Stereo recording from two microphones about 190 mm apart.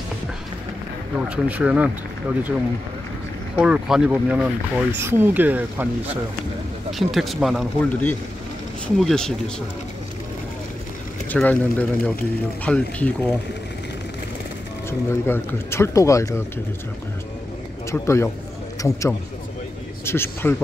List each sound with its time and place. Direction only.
1.3 s speech: 5° right (ahead or behind)
3.5 s speech: 5° right (ahead or behind)
6.9 s speech: centre (ahead or behind)
11.2 s speech: 10° left (ahead or behind)
14.9 s speech: 15° left (ahead or behind)
17.9 s speech: 15° left (ahead or behind)